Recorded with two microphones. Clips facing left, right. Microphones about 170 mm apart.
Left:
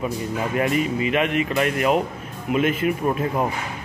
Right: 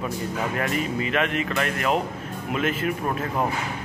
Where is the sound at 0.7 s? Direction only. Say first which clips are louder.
Left 4 dB; 35° right (ahead or behind).